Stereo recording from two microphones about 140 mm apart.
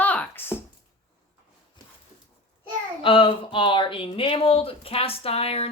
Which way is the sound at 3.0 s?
35° left (ahead or behind).